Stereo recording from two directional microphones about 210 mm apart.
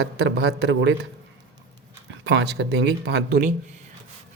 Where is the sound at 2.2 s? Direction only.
55° right (ahead or behind).